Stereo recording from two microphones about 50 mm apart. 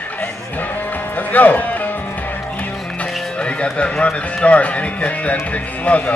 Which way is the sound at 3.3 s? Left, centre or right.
Left.